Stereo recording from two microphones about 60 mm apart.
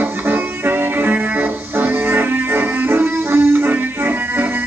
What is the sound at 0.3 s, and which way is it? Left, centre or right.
Music, right.